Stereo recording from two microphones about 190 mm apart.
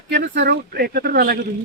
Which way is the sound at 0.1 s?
60° right (ahead or behind).